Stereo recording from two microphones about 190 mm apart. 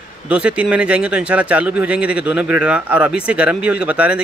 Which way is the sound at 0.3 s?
5° right (ahead or behind).